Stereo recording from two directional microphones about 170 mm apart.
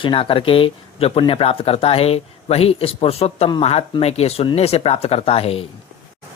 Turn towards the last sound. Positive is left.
turn(degrees=35)  # may be behind; listen again after turning